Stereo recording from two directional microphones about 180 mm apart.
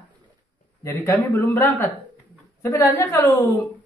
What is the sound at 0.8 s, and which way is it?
Speech, 15° left (ahead or behind).